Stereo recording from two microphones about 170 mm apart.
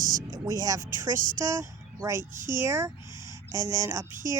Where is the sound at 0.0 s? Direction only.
50° right (ahead or behind).